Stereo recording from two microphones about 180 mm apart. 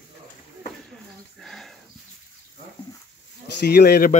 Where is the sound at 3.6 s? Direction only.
65° left (ahead or behind).